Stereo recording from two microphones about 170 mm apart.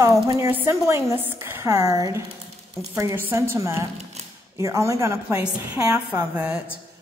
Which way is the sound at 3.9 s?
40° right (ahead or behind).